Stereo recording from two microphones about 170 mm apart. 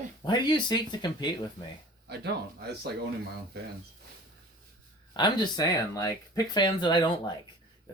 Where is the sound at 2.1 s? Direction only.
75° right (ahead or behind).